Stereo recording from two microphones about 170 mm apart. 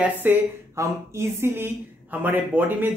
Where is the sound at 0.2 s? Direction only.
15° right (ahead or behind).